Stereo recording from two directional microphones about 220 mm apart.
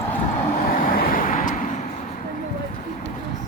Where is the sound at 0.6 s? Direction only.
40° left (ahead or behind).